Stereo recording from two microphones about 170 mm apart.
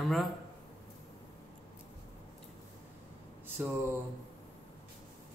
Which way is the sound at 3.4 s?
10° right (ahead or behind).